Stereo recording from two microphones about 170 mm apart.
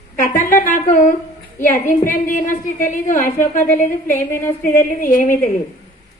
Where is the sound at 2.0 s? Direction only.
50° left (ahead or behind).